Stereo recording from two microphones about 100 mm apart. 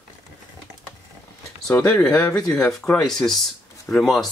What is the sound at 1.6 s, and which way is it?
Speech, 10° left (ahead or behind).